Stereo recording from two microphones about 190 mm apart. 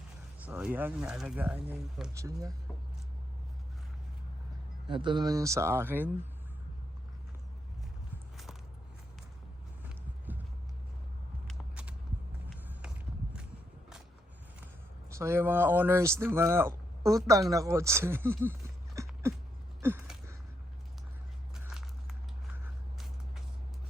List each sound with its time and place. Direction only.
0.3 s speech: 10° right (ahead or behind)
4.9 s speech: 25° right (ahead or behind)
8.1 s walk: centre (ahead or behind)
11.4 s a sound: 5° right (ahead or behind)
15.1 s speech: 15° right (ahead or behind)
19.0 s a sound: 15° right (ahead or behind)
21.5 s biting: 5° right (ahead or behind)
22.5 s vehicle: 5° right (ahead or behind)